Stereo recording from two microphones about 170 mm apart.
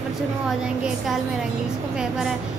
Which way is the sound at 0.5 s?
Centre (ahead or behind).